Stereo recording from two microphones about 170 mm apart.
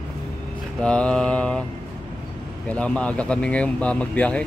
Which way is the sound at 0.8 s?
5° left (ahead or behind).